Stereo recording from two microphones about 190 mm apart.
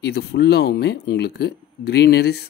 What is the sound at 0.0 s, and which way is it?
Speech, 60° left (ahead or behind).